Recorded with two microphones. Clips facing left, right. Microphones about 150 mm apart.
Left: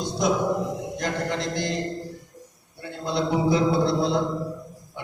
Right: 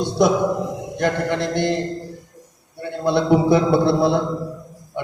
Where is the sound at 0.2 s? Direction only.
65° right (ahead or behind).